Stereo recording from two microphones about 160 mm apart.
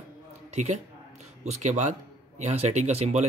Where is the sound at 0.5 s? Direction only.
45° right (ahead or behind).